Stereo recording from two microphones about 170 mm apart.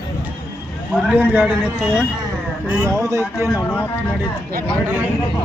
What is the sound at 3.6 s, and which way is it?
Speech, 15° left (ahead or behind).